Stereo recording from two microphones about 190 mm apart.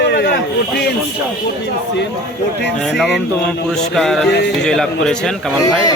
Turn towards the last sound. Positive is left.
turn(degrees=5)  # may be behind; listen again after turning